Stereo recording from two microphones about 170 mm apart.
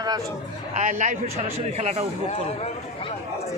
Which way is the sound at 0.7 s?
45° right (ahead or behind).